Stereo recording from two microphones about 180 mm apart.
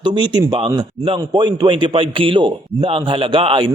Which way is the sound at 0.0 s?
25° right (ahead or behind).